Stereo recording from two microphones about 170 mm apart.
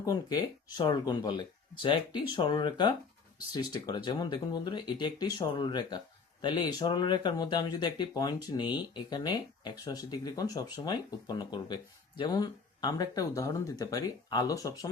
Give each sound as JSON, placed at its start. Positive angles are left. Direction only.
{"t": 0.0, "sound": "speech", "side_deg": 25}